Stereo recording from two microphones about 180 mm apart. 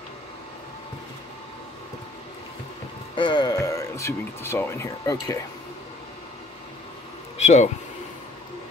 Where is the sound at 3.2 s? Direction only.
25° left (ahead or behind).